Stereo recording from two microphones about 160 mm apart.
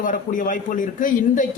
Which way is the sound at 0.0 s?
55° left (ahead or behind).